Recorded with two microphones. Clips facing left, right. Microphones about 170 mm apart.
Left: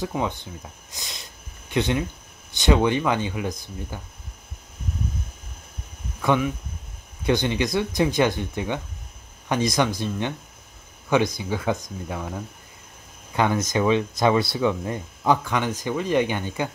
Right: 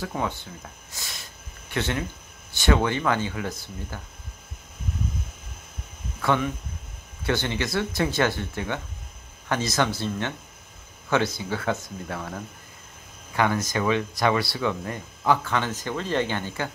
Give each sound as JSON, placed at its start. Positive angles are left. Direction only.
{"t": 0.0, "sound": "speech", "side_deg": 15}
{"t": 6.2, "sound": "speech", "side_deg": 10}
{"t": 13.4, "sound": "speech", "side_deg": 20}